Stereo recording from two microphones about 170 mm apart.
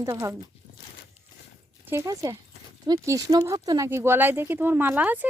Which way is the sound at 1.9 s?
20° right (ahead or behind).